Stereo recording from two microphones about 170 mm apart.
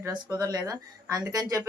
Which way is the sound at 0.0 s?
25° right (ahead or behind).